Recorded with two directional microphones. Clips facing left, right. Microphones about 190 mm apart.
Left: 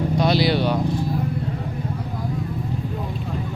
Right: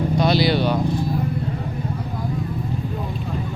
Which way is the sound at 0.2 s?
10° left (ahead or behind).